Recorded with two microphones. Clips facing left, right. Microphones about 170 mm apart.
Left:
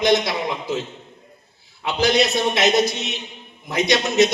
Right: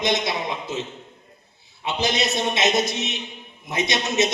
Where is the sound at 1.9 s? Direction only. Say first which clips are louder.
Left 5 dB; 25° right (ahead or behind).